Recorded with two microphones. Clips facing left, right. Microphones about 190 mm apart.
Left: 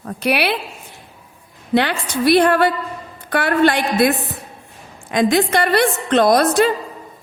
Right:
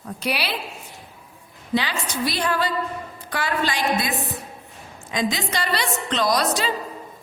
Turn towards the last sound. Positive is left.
turn(degrees=55)  # may be behind; listen again after turning